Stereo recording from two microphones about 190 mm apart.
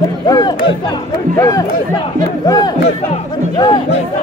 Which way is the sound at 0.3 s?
20° left (ahead or behind).